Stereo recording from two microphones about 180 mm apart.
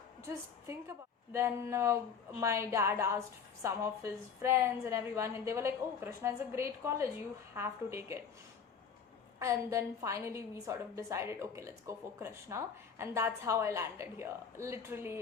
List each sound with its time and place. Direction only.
0.7 s a woman's voice: 15° right (ahead or behind)
9.4 s a woman's voice: 15° right (ahead or behind)